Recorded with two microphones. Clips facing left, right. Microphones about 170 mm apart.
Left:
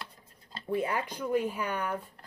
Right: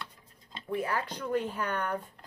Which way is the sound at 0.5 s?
25° left (ahead or behind).